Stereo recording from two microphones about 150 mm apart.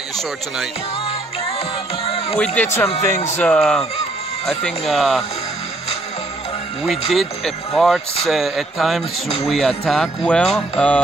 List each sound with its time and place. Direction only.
2.3 s speech: 10° left (ahead or behind)
2.9 s speech: 45° left (ahead or behind)
3.3 s speech: 10° left (ahead or behind)
7.1 s speech: centre (ahead or behind)